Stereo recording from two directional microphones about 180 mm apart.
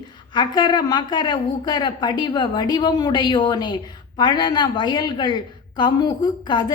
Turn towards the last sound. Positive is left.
turn(degrees=25)  # may be behind; listen again after turning